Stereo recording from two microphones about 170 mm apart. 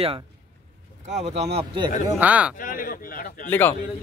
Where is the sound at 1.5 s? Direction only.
30° right (ahead or behind).